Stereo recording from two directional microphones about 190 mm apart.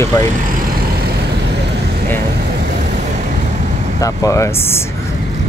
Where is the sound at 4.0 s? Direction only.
15° left (ahead or behind).